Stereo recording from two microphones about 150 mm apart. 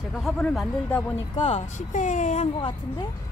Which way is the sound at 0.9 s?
15° left (ahead or behind).